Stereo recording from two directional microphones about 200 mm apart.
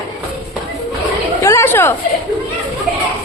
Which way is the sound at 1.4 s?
15° left (ahead or behind).